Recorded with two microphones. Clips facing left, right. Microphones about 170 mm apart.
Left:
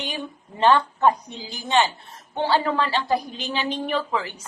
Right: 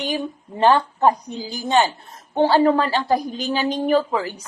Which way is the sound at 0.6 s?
35° right (ahead or behind).